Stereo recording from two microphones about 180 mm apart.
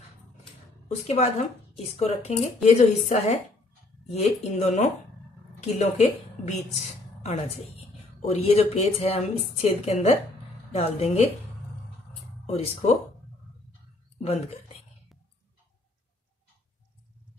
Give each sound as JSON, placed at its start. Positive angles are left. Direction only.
{"t": 0.8, "sound": "a woman's voice", "side_deg": 35}
{"t": 12.4, "sound": "a woman's voice", "side_deg": 35}
{"t": 14.1, "sound": "speech", "side_deg": 35}